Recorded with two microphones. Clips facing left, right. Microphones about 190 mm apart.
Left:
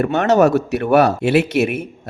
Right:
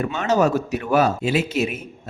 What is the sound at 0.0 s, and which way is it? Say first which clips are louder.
Speech: left 6 dB; 60° left (ahead or behind).